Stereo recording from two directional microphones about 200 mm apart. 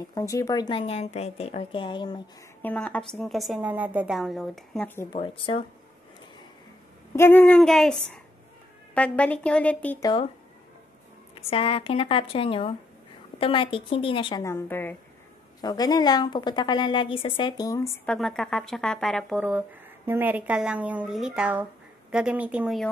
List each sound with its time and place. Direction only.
0.0 s a woman's voice: 15° left (ahead or behind)
2.6 s a woman's voice: 5° left (ahead or behind)
5.1 s a woman's voice: 25° left (ahead or behind)
7.2 s a woman's voice: 10° left (ahead or behind)
11.5 s a woman's voice: 30° left (ahead or behind)
14.4 s a woman's voice: 10° left (ahead or behind)
18.0 s a woman's voice: 5° left (ahead or behind)